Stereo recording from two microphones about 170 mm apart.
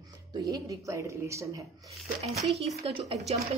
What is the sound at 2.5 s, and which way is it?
Speech, 35° right (ahead or behind).